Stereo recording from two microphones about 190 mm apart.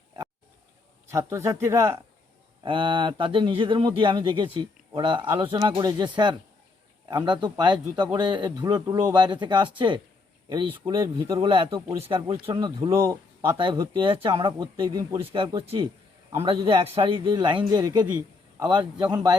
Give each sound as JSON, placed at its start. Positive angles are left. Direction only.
{"t": 1.1, "sound": "speech", "side_deg": -15}
{"t": 2.6, "sound": "speech", "side_deg": -25}
{"t": 12.9, "sound": "speech", "side_deg": -15}